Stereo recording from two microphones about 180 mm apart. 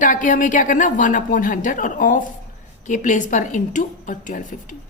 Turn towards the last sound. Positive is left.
turn(degrees=45)  # may be behind; listen again after turning